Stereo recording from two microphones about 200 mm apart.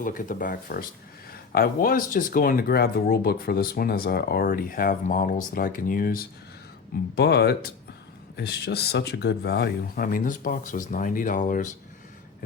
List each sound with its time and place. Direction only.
0.0 s speech: 45° left (ahead or behind)